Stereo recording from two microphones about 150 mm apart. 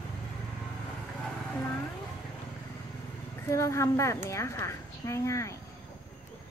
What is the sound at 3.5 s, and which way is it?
A woman's voice, 20° left (ahead or behind).